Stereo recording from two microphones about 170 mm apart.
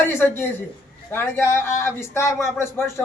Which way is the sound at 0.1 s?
15° left (ahead or behind).